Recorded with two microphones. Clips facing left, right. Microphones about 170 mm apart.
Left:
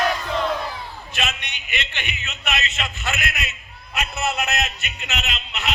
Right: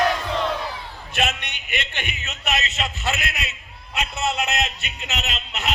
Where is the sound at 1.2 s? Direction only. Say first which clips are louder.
Right 4 dB; 55° right (ahead or behind).